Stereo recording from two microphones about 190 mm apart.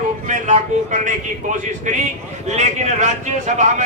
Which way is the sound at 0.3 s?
40° right (ahead or behind).